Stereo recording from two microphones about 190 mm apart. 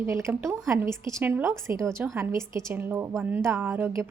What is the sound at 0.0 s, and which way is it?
A woman's voice, 15° right (ahead or behind).